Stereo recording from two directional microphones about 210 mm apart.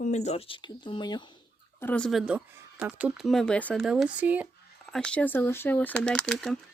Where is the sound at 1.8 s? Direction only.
10° left (ahead or behind).